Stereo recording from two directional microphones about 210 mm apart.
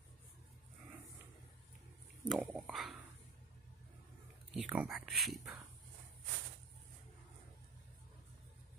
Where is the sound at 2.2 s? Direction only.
5° right (ahead or behind).